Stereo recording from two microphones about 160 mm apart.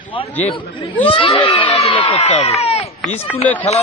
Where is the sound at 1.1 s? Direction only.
35° left (ahead or behind).